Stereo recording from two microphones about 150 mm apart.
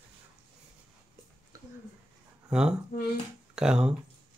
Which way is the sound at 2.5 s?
5° right (ahead or behind).